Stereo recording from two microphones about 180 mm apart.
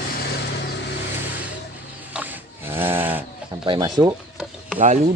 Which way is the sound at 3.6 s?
25° right (ahead or behind).